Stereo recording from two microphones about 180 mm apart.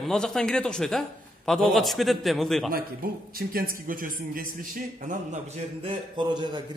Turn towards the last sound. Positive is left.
turn(degrees=-25)  # may be behind; listen again after turning